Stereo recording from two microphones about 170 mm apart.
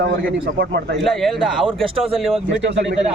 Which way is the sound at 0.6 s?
90° right.